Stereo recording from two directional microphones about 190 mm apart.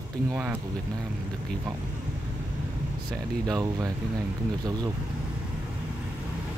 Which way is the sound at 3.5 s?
20° right (ahead or behind).